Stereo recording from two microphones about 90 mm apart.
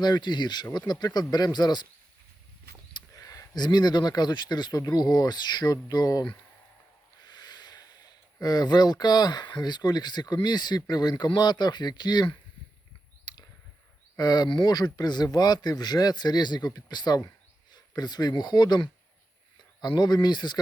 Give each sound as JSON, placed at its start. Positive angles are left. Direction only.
{"t": 0.0, "sound": "speech", "side_deg": 55}
{"t": 3.2, "sound": "speech", "side_deg": 40}
{"t": 7.3, "sound": "speech", "side_deg": 50}
{"t": 13.3, "sound": "a sound", "side_deg": 55}
{"t": 14.2, "sound": "speech", "side_deg": 50}